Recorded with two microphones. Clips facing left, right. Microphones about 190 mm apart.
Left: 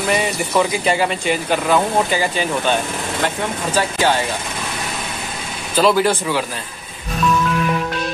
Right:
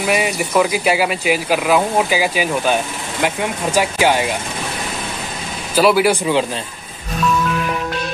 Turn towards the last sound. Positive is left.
turn(degrees=-15)  # may be behind; listen again after turning